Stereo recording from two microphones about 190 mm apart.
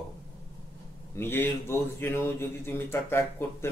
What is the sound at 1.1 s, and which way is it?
A man's voice, 10° left (ahead or behind).